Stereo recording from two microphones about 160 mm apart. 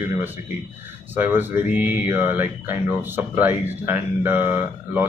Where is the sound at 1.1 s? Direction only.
15° right (ahead or behind).